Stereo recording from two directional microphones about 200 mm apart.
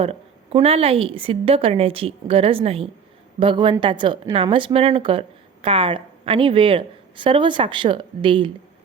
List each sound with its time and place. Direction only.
0.0 s a woman's voice: 30° right (ahead or behind)